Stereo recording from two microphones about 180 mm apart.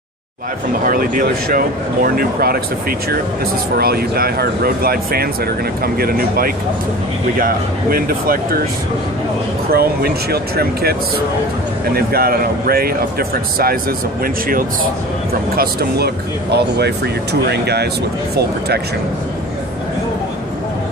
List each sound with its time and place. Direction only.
0.8 s speech: 50° right (ahead or behind)
3.7 s speech: 60° right (ahead or behind)
9.7 s speech: 60° right (ahead or behind)